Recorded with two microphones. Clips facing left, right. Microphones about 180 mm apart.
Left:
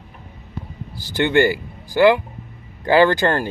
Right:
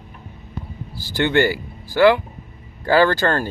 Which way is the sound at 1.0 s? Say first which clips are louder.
Left 1 dB; 15° left (ahead or behind).